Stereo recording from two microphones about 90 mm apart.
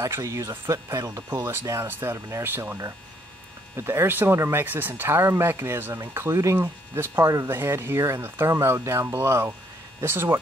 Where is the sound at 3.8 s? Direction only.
25° right (ahead or behind).